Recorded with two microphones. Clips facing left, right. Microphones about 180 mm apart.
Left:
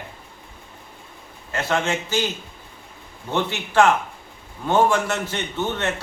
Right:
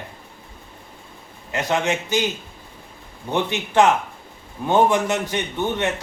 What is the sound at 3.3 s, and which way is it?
A man's voice, 20° right (ahead or behind).